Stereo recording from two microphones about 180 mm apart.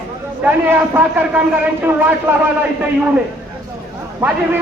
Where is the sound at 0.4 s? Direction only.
10° right (ahead or behind).